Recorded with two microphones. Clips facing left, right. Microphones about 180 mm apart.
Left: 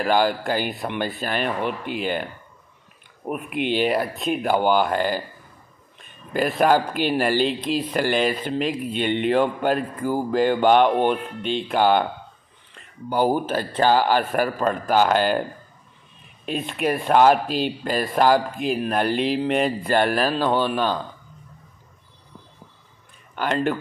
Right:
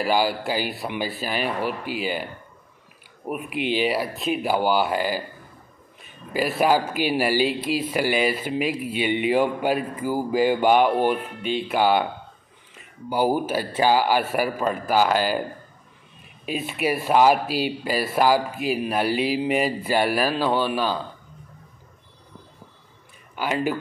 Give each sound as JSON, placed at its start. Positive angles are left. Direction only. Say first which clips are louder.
{"t": 0.0, "sound": "a man's voice", "louder": "left 2 dB", "side_deg": -5}
{"t": 3.3, "sound": "a man's voice", "louder": "left 1 dB", "side_deg": 0}
{"t": 6.3, "sound": "a man's voice", "louder": "left 2 dB", "side_deg": -5}
{"t": 16.4, "sound": "speech", "louder": "left 1 dB", "side_deg": -5}
{"t": 23.3, "sound": "speech", "louder": "left 2 dB", "side_deg": -5}